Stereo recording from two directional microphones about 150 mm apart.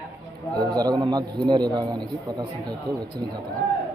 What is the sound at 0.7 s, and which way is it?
A man's voice, 25° right (ahead or behind).